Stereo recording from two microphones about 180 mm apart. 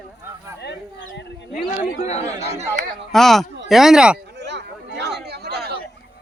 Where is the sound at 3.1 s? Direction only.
Centre (ahead or behind).